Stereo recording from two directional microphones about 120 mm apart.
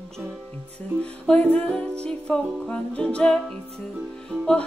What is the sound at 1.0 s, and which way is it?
Music, 10° left (ahead or behind).